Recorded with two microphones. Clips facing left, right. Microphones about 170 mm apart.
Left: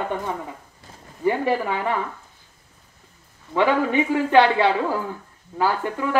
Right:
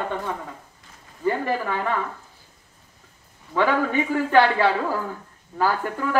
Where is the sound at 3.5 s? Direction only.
15° left (ahead or behind).